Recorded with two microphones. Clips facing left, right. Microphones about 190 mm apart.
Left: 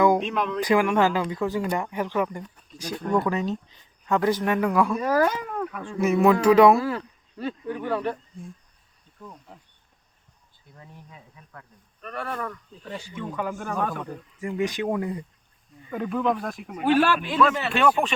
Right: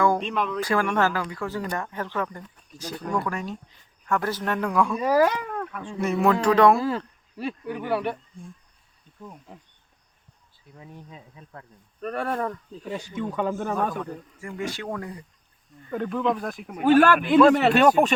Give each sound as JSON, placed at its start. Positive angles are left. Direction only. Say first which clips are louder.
{"t": 0.2, "sound": "speech", "louder": "left 1 dB", "side_deg": 0}
{"t": 0.6, "sound": "speech", "louder": "left 4 dB", "side_deg": 15}
{"t": 4.9, "sound": "speech", "louder": "right 2 dB", "side_deg": -10}
{"t": 5.3, "sound": "cat", "louder": "left 1 dB", "side_deg": 5}
{"t": 6.0, "sound": "speech", "louder": "left 3 dB", "side_deg": 5}
{"t": 7.3, "sound": "speech", "louder": "even", "side_deg": -5}
{"t": 11.1, "sound": "speech", "louder": "right 3 dB", "side_deg": -25}
{"t": 12.0, "sound": "speech", "louder": "right 5 dB", "side_deg": -45}
{"t": 12.8, "sound": "speech", "louder": "right 4 dB", "side_deg": -15}
{"t": 14.0, "sound": "speech", "louder": "left 1 dB", "side_deg": 15}
{"t": 15.8, "sound": "speech", "louder": "even", "side_deg": 5}
{"t": 16.8, "sound": "speech", "louder": "right 4 dB", "side_deg": -50}
{"t": 17.7, "sound": "speech", "louder": "right 4 dB", "side_deg": -40}